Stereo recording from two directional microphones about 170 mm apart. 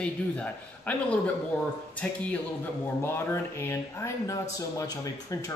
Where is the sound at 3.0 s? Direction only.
15° left (ahead or behind).